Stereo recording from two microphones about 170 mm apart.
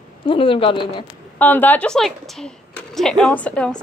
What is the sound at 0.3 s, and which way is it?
Speech, 30° left (ahead or behind).